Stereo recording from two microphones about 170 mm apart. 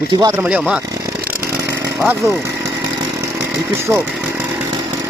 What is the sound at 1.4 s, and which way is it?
Chainsaw, 15° right (ahead or behind).